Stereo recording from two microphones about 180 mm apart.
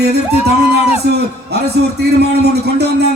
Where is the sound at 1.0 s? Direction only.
65° right (ahead or behind).